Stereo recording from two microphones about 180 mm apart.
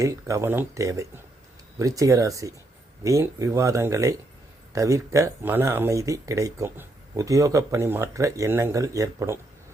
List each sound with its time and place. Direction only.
0.0 s speech: 15° right (ahead or behind)